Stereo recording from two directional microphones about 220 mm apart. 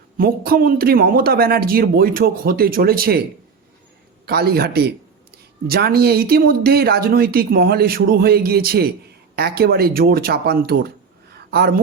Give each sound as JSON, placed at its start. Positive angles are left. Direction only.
{"t": 0.2, "sound": "speech", "side_deg": -40}
{"t": 4.3, "sound": "speech", "side_deg": -45}
{"t": 11.3, "sound": "a sound", "side_deg": -45}